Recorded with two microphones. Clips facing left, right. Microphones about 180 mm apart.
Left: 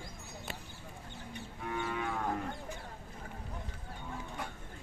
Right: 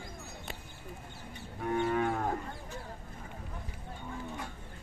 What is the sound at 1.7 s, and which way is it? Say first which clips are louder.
Moo: right 7 dB; 45° right (ahead or behind).